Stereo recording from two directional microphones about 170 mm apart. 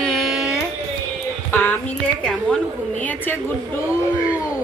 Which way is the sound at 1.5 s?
10° left (ahead or behind).